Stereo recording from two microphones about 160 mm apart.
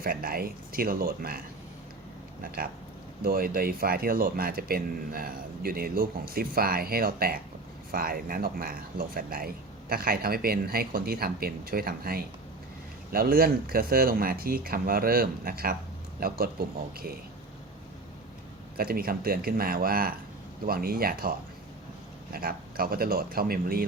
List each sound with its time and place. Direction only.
0.0 s speech: 65° right (ahead or behind)
3.2 s speech: 65° right (ahead or behind)
18.8 s speech: 65° right (ahead or behind)